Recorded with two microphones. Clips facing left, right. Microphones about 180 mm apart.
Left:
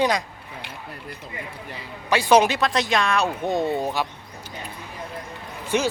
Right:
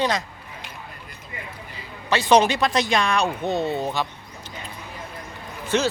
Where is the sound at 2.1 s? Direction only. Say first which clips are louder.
Even; 10° left (ahead or behind).